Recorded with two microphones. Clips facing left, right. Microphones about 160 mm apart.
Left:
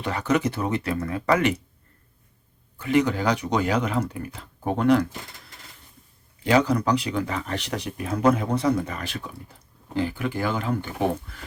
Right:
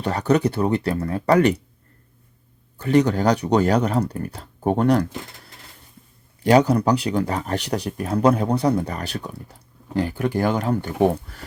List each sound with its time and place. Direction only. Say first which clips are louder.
0.0 s speech: right 4 dB; 40° right (ahead or behind)
2.7 s speech: right 4 dB; 40° right (ahead or behind)
6.4 s speech: right 4 dB; 40° right (ahead or behind)